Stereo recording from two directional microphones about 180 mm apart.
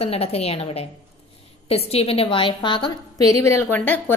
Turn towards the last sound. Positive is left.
turn(degrees=10)  # may be behind; listen again after turning